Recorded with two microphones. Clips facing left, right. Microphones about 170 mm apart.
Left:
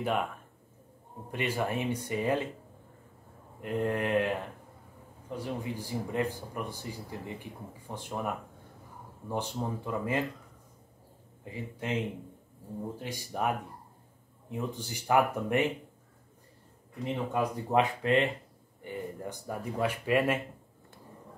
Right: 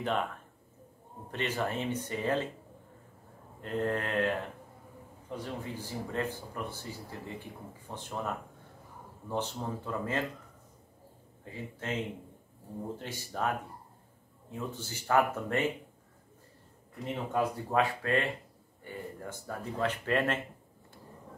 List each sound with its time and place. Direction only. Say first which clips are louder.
0.0 s speech: left 1 dB; 10° left (ahead or behind)
1.3 s speech: left 2 dB; 10° left (ahead or behind)
3.6 s speech: left 2 dB; 15° left (ahead or behind)
5.4 s speech: left 4 dB; 15° left (ahead or behind)
11.7 s speech: left 3 dB; 15° left (ahead or behind)
13.0 s speech: left 2 dB; 15° left (ahead or behind)
17.3 s speech: even; 15° left (ahead or behind)